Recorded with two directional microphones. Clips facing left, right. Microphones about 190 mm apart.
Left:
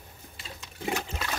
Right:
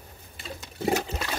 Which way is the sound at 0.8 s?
40° right (ahead or behind).